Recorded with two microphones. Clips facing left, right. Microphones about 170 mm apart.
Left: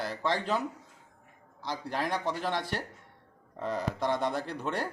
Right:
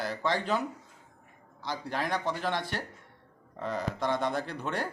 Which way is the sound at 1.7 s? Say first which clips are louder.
Even; centre (ahead or behind).